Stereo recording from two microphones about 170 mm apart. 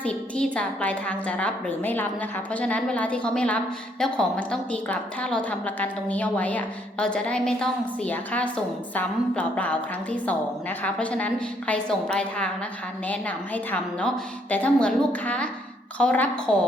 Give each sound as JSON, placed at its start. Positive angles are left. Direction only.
{"t": 0.0, "sound": "a woman's voice", "side_deg": 5}